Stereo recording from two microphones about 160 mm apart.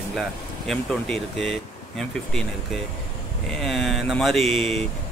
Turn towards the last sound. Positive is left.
turn(degrees=0)  # may be behind; listen again after turning